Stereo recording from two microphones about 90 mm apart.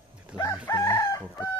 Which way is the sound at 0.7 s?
35° left (ahead or behind).